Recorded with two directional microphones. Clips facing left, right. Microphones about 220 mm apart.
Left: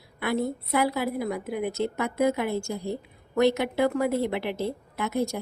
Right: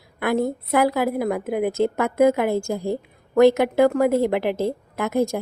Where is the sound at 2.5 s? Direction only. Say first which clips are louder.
Right 6 dB; 90° right.